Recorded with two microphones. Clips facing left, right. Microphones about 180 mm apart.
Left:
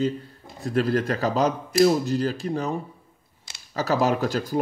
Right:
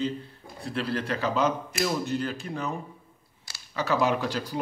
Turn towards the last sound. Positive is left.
turn(degrees=45)  # may be behind; listen again after turning